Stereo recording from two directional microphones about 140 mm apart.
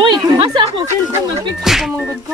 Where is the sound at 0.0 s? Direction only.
35° right (ahead or behind).